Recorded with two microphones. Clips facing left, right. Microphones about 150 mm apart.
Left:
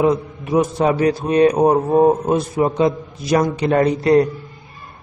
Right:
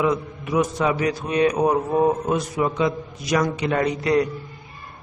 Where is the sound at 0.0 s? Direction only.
30° left (ahead or behind).